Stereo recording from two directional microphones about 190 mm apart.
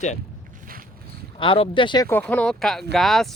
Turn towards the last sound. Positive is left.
turn(degrees=0)  # may be behind; listen again after turning